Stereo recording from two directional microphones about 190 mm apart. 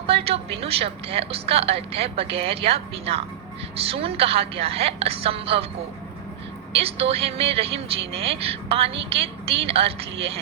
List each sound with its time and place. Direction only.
0.1 s a woman's voice: 30° right (ahead or behind)
6.7 s a woman's voice: 30° right (ahead or behind)